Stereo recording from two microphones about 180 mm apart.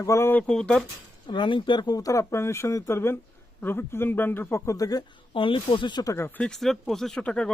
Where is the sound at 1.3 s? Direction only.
25° left (ahead or behind).